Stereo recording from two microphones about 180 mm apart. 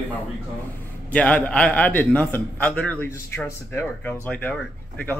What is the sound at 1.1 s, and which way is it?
A man's voice, 10° left (ahead or behind).